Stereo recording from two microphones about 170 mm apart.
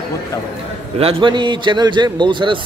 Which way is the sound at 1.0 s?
30° right (ahead or behind).